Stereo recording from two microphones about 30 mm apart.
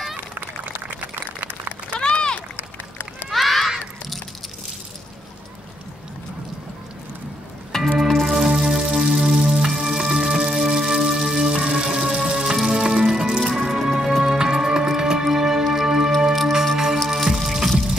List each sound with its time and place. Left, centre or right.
2.0 s a sound: left
3.3 s honk: centre
7.7 s music: centre
8.1 s music: centre
12.3 s rain on surface: centre
12.5 s music: centre